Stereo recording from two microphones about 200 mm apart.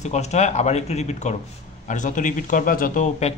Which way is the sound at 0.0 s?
35° left (ahead or behind).